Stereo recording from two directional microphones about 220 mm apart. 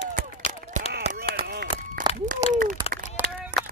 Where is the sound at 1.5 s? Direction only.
45° right (ahead or behind).